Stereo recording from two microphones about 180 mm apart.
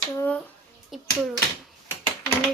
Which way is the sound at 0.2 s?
10° left (ahead or behind).